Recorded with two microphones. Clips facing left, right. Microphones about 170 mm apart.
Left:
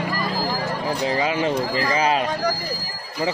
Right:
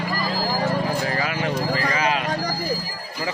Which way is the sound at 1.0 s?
20° left (ahead or behind).